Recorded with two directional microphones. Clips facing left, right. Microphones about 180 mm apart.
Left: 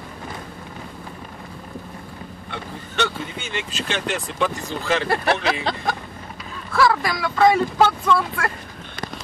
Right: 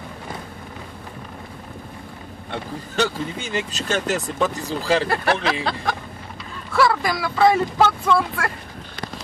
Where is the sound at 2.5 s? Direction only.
35° right (ahead or behind).